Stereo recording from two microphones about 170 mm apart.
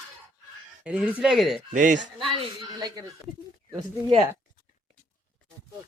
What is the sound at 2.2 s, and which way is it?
Speech, 30° right (ahead or behind).